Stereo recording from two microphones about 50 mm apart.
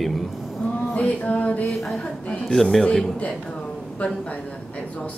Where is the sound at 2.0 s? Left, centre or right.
Left.